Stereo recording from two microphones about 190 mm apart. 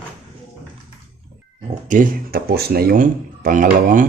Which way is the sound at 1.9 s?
50° right (ahead or behind).